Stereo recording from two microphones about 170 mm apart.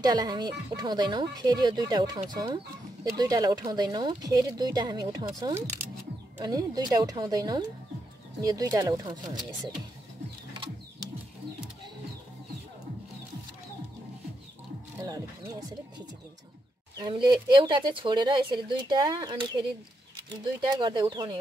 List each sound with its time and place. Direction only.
0.0 s speech: 25° right (ahead or behind)
15.0 s music: 20° right (ahead or behind)
17.0 s speech: 30° right (ahead or behind)